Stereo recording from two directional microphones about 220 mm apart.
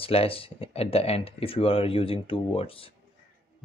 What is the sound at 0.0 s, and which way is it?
Speech, 25° left (ahead or behind).